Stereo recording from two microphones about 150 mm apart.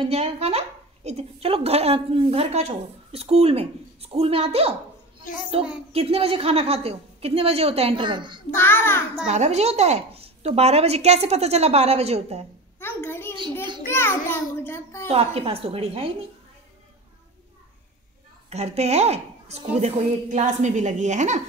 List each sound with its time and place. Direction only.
0.0 s a woman's voice: 45° right (ahead or behind)
8.5 s a child's voice: 15° left (ahead or behind)
9.3 s speech: 45° right (ahead or behind)
12.7 s a sound: 15° left (ahead or behind)
13.8 s a child's voice: 15° left (ahead or behind)
15.0 s a woman's voice: 40° right (ahead or behind)
18.5 s speech: 45° right (ahead or behind)